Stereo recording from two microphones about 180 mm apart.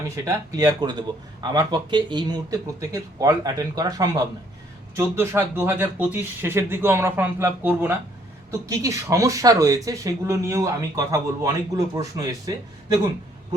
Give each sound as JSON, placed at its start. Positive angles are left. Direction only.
{"t": 0.3, "sound": "speech", "side_deg": -20}